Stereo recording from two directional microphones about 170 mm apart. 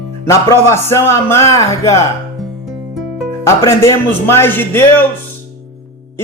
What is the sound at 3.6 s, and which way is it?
A man's voice, 15° left (ahead or behind).